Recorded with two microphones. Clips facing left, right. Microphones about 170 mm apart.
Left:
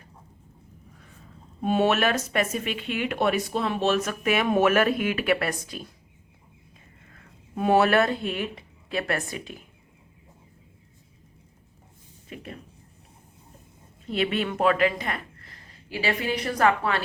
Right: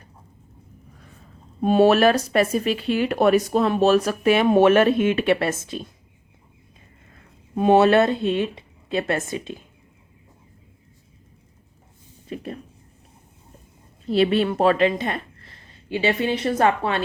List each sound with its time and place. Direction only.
1.6 s speech: 35° right (ahead or behind)
7.5 s speech: 25° right (ahead or behind)
12.3 s speech: 35° right (ahead or behind)
14.1 s a woman's voice: 35° right (ahead or behind)